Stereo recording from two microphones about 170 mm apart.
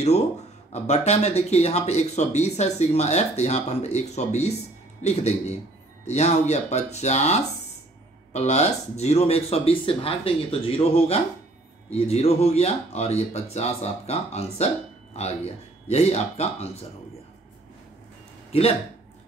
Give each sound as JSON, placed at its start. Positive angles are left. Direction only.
{"t": 0.8, "sound": "speech", "side_deg": 40}
{"t": 18.5, "sound": "speech", "side_deg": 35}